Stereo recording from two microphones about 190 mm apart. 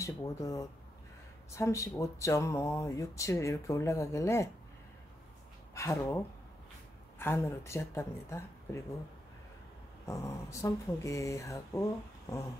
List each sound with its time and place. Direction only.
0.0 s speech: 15° left (ahead or behind)
5.8 s speech: 15° left (ahead or behind)
7.2 s speech: 10° left (ahead or behind)
10.0 s speech: 15° left (ahead or behind)